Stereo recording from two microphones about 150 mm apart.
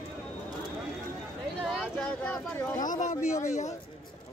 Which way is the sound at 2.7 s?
60° left (ahead or behind).